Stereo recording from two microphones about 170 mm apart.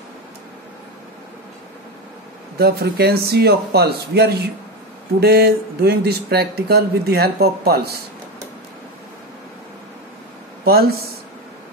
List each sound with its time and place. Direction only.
2.6 s speech: 65° right (ahead or behind)
10.6 s speech: 65° right (ahead or behind)